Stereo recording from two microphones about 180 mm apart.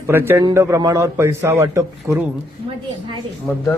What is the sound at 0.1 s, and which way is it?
A man's voice, 10° right (ahead or behind).